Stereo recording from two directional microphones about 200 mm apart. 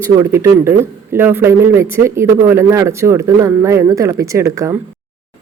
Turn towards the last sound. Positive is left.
turn(degrees=-15)  # may be behind; listen again after turning